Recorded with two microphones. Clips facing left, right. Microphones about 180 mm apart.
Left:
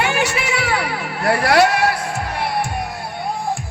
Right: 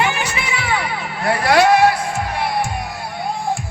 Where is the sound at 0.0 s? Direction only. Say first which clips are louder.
Left 1 dB; 70° left (ahead or behind).